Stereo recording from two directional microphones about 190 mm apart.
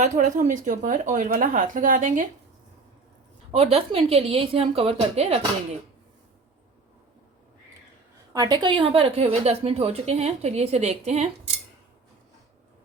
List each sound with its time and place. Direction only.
0.0 s a woman's voice: 40° right (ahead or behind)
3.5 s a woman's voice: 30° right (ahead or behind)
8.3 s a woman's voice: 20° right (ahead or behind)